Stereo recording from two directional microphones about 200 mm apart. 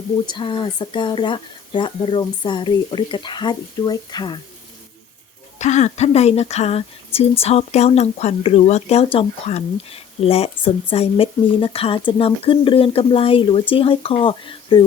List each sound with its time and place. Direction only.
0.3 s speech: 25° left (ahead or behind)
5.5 s speech: 35° left (ahead or behind)